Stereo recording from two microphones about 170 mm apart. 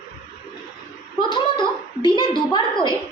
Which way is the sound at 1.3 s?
25° left (ahead or behind).